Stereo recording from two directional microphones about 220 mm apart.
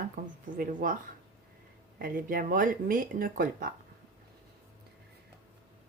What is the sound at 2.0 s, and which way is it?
Speech, 40° right (ahead or behind).